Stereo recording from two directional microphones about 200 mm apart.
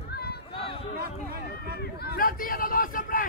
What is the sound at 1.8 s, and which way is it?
Speech, 50° left (ahead or behind).